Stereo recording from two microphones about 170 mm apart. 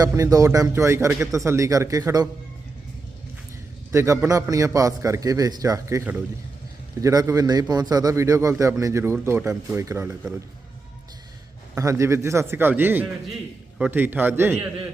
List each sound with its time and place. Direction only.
0.0 s a man's voice: 20° right (ahead or behind)
3.9 s a man's voice: 15° right (ahead or behind)
11.7 s a man's voice: 15° right (ahead or behind)